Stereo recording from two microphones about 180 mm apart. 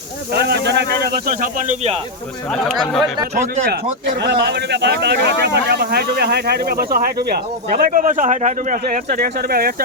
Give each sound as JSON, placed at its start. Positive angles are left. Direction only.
{"t": 0.3, "sound": "speech", "side_deg": -65}
{"t": 4.2, "sound": "speech", "side_deg": -70}
{"t": 9.1, "sound": "speech", "side_deg": -55}